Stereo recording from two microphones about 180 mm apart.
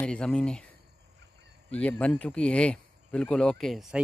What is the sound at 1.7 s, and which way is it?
Speech, 5° left (ahead or behind).